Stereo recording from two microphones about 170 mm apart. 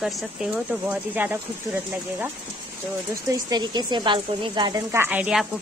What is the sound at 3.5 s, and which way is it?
A woman's voice, 25° right (ahead or behind).